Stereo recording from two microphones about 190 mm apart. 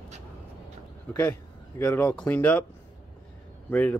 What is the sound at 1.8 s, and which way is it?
Speech, 10° left (ahead or behind).